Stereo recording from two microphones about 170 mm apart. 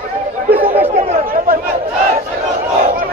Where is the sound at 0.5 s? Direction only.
10° right (ahead or behind).